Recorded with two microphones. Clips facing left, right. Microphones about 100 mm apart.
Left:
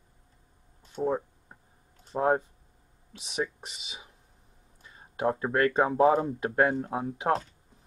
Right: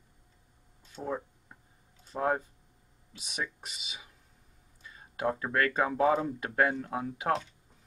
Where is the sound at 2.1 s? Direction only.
25° left (ahead or behind).